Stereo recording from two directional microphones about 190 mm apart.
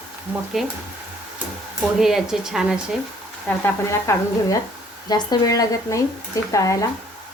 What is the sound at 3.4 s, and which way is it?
Speech, 15° left (ahead or behind).